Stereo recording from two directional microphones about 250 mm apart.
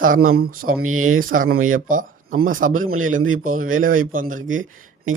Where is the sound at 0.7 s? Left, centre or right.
Right.